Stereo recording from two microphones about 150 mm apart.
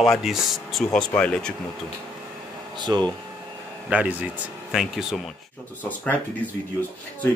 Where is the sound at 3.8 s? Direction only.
10° right (ahead or behind).